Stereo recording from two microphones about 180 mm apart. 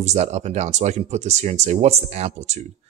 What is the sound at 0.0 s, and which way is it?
Speech, 40° right (ahead or behind).